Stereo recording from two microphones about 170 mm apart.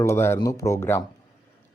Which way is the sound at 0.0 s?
15° left (ahead or behind).